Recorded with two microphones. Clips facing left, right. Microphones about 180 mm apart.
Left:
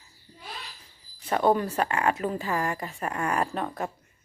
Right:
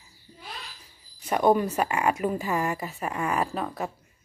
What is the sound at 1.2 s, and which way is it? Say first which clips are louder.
A woman's voice: right 2 dB; 15° right (ahead or behind).